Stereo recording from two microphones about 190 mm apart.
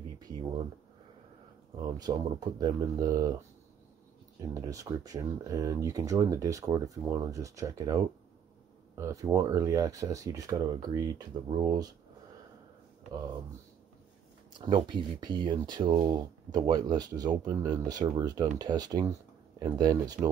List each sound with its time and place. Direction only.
2.0 s speech: 20° right (ahead or behind)
4.6 s speech: 15° right (ahead or behind)
14.6 s speech: 25° right (ahead or behind)